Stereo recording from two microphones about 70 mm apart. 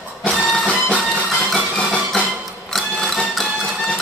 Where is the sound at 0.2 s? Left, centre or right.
Centre.